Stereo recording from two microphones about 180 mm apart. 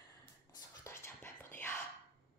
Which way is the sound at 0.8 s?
15° left (ahead or behind).